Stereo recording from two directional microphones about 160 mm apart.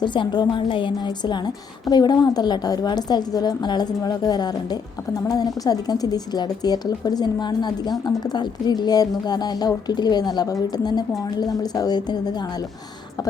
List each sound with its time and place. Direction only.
0.0 s a woman's voice: 30° left (ahead or behind)